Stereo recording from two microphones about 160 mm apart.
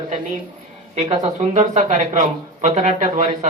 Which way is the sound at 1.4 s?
50° right (ahead or behind).